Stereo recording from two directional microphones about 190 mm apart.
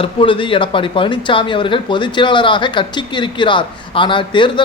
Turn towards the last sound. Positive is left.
turn(degrees=25)  # may be behind; listen again after turning